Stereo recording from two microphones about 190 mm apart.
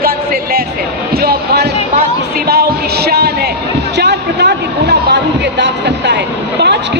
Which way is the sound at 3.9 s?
60° right (ahead or behind).